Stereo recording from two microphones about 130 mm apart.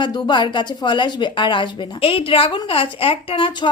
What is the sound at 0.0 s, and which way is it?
A woman's voice, 35° left (ahead or behind).